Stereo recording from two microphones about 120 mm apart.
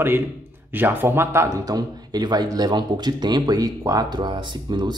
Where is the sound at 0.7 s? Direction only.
15° right (ahead or behind).